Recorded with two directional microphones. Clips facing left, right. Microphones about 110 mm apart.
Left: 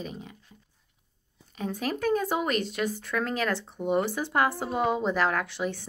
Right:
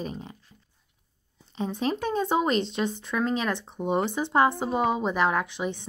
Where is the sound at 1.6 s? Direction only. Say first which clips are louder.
Right 3 dB; 25° right (ahead or behind).